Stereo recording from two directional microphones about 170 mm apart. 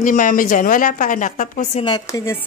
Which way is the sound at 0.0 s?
55° left (ahead or behind).